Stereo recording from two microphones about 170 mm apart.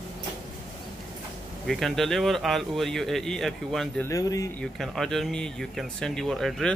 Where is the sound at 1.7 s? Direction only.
Centre (ahead or behind).